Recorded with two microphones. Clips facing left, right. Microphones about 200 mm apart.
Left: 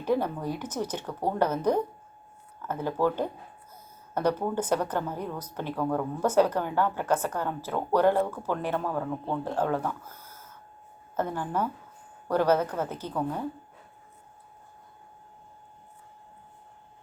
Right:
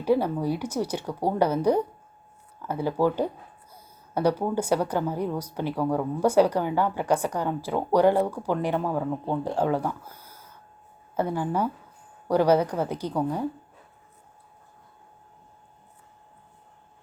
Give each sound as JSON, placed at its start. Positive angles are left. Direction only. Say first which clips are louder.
{"t": 0.0, "sound": "speech", "louder": "right 4 dB", "side_deg": -10}